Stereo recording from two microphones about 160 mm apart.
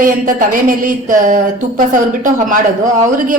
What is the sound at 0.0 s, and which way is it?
Speech, 55° right (ahead or behind).